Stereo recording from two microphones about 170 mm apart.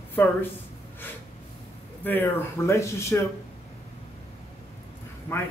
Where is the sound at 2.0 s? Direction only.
10° left (ahead or behind).